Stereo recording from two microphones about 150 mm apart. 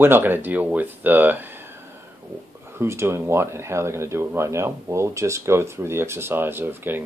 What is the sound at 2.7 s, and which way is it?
Speech, 15° right (ahead or behind).